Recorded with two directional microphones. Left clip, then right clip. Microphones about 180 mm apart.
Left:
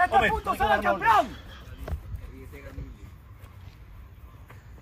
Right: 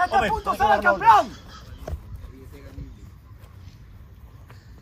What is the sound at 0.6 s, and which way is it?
Speech, 30° right (ahead or behind).